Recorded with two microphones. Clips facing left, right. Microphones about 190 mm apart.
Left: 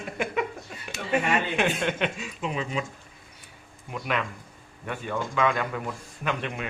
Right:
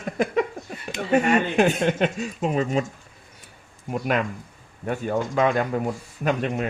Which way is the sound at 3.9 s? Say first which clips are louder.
Right 6 dB; 45° right (ahead or behind).